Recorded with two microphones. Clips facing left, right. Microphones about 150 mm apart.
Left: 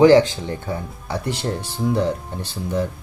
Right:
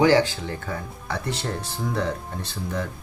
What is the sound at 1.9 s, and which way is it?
Speech, 15° left (ahead or behind).